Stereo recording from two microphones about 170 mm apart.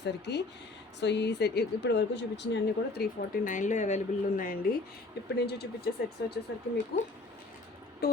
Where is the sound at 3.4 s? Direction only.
45° left (ahead or behind).